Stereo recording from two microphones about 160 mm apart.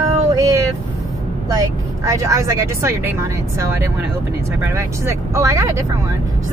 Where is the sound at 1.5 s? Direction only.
20° right (ahead or behind).